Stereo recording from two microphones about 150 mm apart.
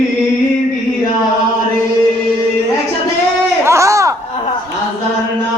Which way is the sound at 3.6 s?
20° right (ahead or behind).